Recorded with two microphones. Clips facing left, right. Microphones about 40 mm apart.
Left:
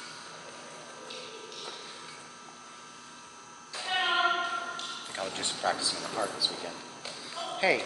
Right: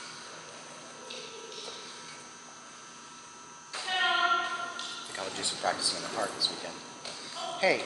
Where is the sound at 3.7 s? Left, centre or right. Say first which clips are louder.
Even; centre.